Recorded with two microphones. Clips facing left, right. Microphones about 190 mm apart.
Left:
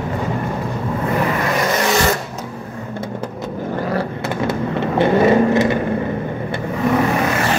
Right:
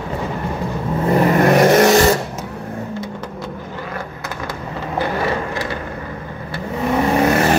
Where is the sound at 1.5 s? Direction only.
55° right (ahead or behind).